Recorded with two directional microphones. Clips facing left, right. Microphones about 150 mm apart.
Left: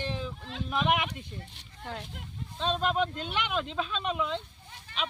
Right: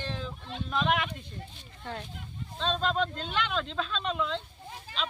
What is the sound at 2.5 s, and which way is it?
Speech, 10° left (ahead or behind).